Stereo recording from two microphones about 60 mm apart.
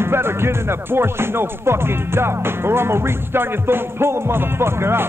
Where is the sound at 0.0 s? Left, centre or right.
Right.